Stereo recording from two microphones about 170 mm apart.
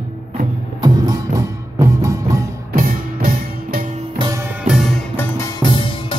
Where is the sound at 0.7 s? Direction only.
25° right (ahead or behind).